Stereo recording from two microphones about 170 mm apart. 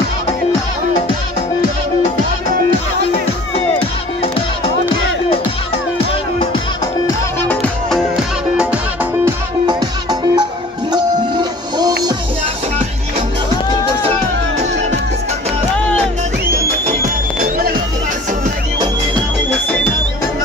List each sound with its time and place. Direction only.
9.7 s music: 25° right (ahead or behind)
17.4 s music: 60° right (ahead or behind)